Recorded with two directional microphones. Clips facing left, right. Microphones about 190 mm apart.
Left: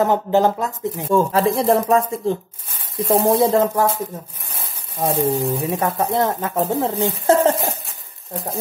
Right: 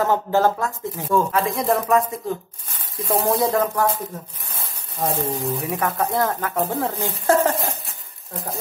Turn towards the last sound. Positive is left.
turn(degrees=25)  # may be behind; listen again after turning